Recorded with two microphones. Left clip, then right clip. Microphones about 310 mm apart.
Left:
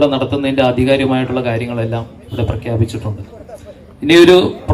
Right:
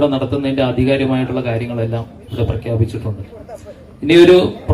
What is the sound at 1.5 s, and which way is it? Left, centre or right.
A man's voice, centre.